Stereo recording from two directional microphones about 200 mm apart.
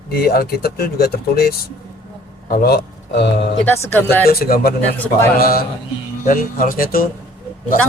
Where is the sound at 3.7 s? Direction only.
10° left (ahead or behind).